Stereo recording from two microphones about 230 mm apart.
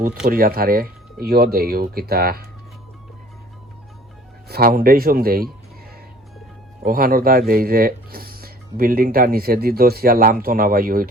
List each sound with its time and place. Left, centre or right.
0.3 s speech: right
4.4 s speech: right
6.8 s speech: right